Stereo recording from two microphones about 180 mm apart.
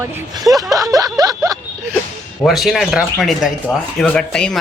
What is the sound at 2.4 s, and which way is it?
Speech, centre (ahead or behind).